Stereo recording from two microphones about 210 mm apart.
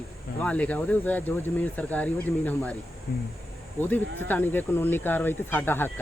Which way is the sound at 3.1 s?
45° left (ahead or behind).